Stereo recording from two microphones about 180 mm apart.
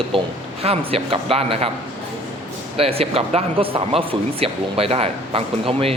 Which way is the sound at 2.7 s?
35° right (ahead or behind).